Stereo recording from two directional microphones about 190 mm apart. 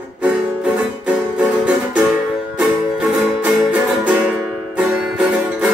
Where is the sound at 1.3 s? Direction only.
5° right (ahead or behind).